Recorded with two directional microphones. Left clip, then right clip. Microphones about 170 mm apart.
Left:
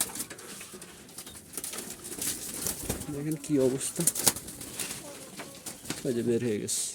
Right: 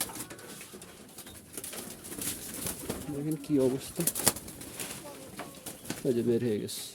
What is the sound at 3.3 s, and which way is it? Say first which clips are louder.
Speech: left 1 dB; centre (ahead or behind).